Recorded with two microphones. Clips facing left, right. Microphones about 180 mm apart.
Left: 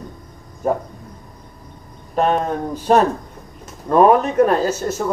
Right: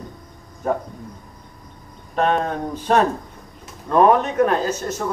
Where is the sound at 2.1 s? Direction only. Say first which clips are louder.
Left 2 dB; 5° left (ahead or behind).